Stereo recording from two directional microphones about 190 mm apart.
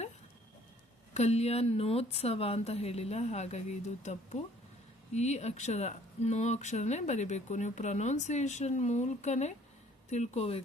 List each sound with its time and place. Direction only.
1.1 s speech: 35° left (ahead or behind)